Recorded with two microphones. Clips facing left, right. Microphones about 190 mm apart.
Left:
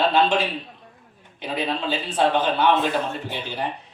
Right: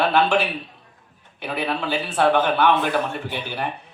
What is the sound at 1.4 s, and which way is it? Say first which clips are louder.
A man's voice: even; 20° left (ahead or behind).